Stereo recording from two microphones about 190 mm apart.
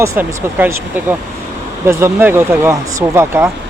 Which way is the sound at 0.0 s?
15° right (ahead or behind).